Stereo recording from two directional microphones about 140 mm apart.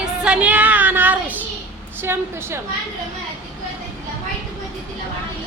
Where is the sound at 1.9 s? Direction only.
15° right (ahead or behind).